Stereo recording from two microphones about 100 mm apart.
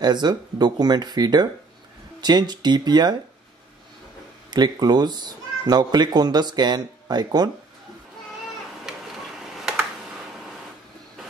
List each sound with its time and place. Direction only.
0.0 s speech: 45° right (ahead or behind)
4.5 s speech: 45° right (ahead or behind)
9.6 s a sound: centre (ahead or behind)